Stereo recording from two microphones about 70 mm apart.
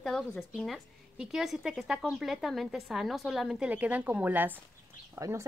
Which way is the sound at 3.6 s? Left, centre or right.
Right.